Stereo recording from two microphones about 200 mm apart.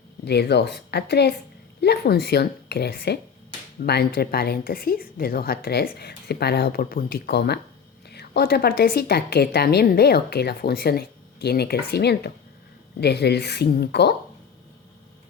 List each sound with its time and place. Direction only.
0.3 s a woman's voice: 55° left (ahead or behind)